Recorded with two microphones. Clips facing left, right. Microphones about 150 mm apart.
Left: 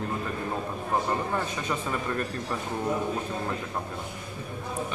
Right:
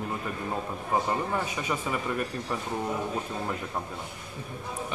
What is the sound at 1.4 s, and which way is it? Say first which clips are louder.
Speech: even; 10° right (ahead or behind).